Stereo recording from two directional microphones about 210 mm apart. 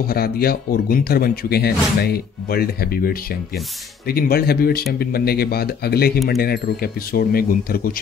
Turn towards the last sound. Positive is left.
turn(degrees=45)  # may be behind; listen again after turning